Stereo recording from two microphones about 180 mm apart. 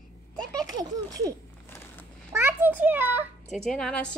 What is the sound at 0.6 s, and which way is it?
A child's voice, 20° right (ahead or behind).